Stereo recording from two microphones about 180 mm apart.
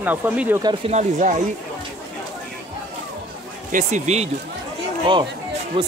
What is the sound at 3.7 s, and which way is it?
Speech, 45° right (ahead or behind).